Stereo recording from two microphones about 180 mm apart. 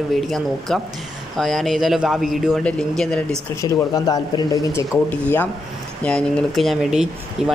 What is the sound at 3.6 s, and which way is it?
Speech, 20° left (ahead or behind).